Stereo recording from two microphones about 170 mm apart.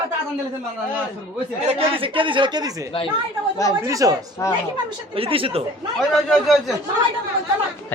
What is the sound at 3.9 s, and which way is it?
Speech, 20° right (ahead or behind).